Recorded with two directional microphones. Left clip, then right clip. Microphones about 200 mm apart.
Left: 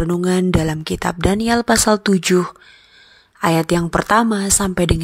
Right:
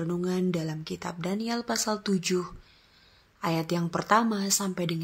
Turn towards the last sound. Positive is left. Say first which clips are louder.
# left 12 dB
turn(degrees=40)  # may be behind; listen again after turning